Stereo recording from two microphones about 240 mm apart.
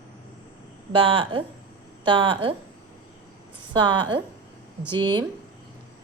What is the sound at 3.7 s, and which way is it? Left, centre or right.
Speech, centre.